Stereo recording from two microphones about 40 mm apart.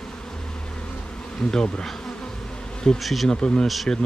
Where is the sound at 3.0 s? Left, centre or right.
Centre.